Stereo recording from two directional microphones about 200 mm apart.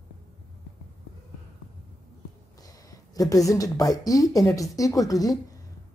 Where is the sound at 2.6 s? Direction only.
15° left (ahead or behind).